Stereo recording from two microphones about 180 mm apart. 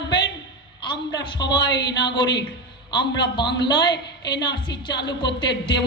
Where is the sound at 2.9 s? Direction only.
70° left (ahead or behind).